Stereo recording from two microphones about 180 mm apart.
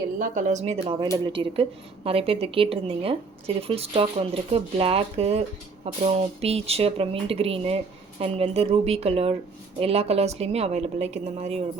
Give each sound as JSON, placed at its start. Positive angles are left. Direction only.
{"t": 0.2, "sound": "a woman's voice", "side_deg": -45}